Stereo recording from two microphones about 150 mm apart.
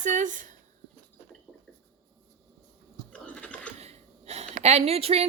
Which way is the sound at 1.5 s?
10° left (ahead or behind).